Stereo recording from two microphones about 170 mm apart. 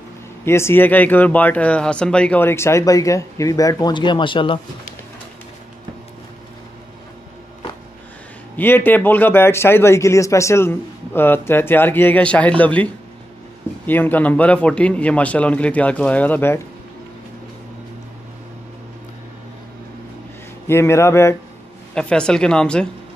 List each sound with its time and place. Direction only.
0.5 s a man's voice: 15° left (ahead or behind)
8.5 s a man's voice: 10° left (ahead or behind)
20.6 s a man's voice: 15° left (ahead or behind)
21.9 s speech: 5° left (ahead or behind)